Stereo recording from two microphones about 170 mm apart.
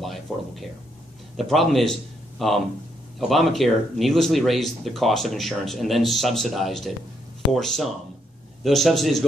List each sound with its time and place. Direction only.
0.0 s a man's voice: centre (ahead or behind)